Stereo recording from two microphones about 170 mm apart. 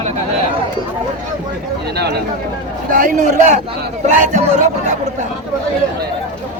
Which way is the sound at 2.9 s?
50° right (ahead or behind).